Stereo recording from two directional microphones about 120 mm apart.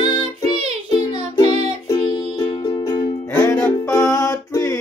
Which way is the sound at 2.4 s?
25° left (ahead or behind).